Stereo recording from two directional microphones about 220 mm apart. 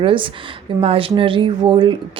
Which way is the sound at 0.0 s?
25° right (ahead or behind).